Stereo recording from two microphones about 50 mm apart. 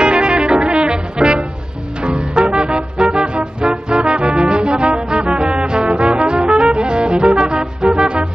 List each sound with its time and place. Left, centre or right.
0.0 s brass instrument: centre
2.0 s music: centre